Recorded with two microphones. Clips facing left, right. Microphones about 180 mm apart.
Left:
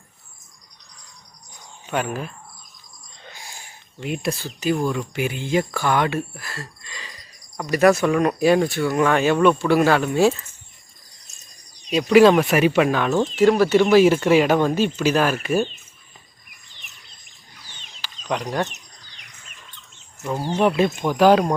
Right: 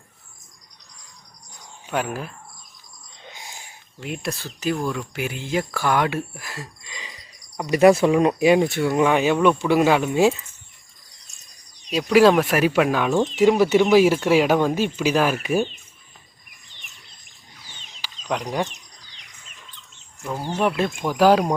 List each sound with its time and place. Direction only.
1.9 s speech: 5° right (ahead or behind)
3.2 s a sound: 20° right (ahead or behind)
4.0 s speech: centre (ahead or behind)
7.8 s speech: 25° right (ahead or behind)
11.9 s speech: centre (ahead or behind)
18.3 s speech: 10° right (ahead or behind)
20.1 s speech: 5° left (ahead or behind)